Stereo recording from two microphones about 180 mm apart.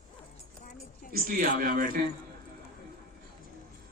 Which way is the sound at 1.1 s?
55° right (ahead or behind).